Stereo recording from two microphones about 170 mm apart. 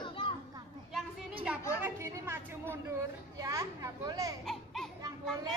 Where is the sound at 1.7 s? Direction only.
10° right (ahead or behind).